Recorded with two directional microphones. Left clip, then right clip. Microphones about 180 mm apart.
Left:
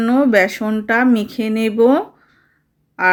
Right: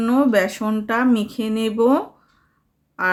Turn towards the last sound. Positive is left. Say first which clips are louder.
# left 6 dB
turn(degrees=15)  # may be behind; listen again after turning